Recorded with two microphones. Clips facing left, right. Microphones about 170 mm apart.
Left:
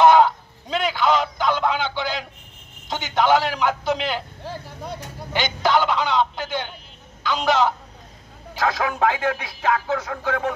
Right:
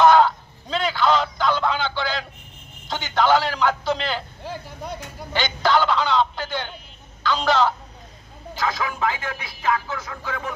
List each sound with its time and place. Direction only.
0.0 s a sound: 20° left (ahead or behind)
2.9 s speech: 15° left (ahead or behind)
5.3 s speech: 15° left (ahead or behind)
8.5 s speech: 70° left (ahead or behind)